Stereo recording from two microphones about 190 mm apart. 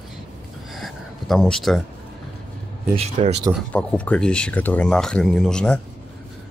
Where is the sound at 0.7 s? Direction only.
Centre (ahead or behind).